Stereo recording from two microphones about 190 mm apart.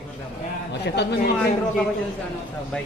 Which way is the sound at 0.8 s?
65° left (ahead or behind).